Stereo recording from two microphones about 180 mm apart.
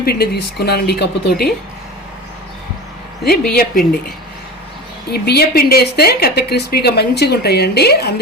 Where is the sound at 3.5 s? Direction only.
55° left (ahead or behind).